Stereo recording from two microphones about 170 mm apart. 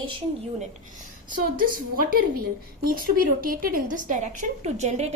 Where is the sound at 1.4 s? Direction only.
55° right (ahead or behind).